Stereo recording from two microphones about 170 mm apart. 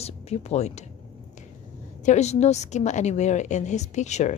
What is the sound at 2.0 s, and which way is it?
A woman's voice, 40° left (ahead or behind).